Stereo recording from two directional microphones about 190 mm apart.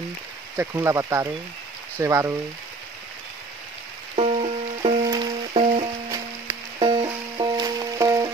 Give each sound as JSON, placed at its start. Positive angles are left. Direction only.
{"t": 0.6, "sound": "speech", "side_deg": -15}
{"t": 4.1, "sound": "music", "side_deg": -30}
{"t": 6.0, "sound": "music", "side_deg": -15}